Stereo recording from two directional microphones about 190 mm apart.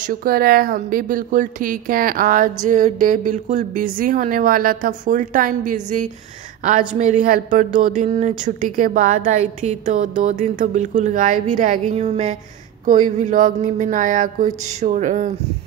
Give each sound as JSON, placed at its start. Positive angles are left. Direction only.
{"t": 0.0, "sound": "speech", "side_deg": -50}